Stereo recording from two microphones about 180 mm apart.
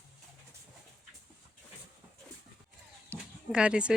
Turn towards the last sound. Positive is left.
turn(degrees=-5)  # may be behind; listen again after turning